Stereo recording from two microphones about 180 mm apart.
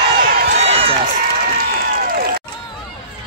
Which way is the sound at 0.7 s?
30° right (ahead or behind).